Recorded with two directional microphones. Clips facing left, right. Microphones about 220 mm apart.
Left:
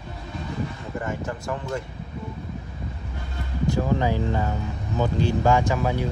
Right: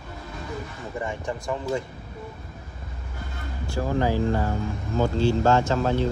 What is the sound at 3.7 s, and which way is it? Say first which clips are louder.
Speech: left 1 dB; 20° left (ahead or behind).